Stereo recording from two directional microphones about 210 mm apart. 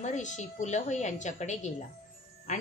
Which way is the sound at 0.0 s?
35° left (ahead or behind).